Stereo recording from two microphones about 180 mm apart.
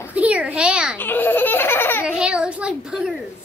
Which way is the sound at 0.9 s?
10° left (ahead or behind).